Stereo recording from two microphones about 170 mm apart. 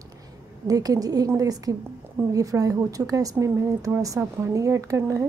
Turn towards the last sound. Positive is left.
turn(degrees=-20)  # may be behind; listen again after turning